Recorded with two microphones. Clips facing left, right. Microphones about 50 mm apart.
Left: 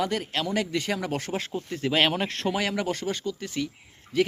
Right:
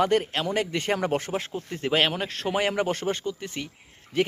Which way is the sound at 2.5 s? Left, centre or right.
Right.